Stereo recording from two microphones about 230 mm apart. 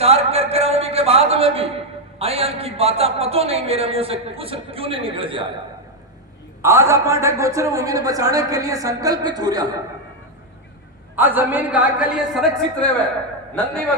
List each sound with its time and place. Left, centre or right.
0.0 s a sound: right
2.1 s a man's voice: right
6.6 s a man's voice: centre
11.2 s a man's voice: centre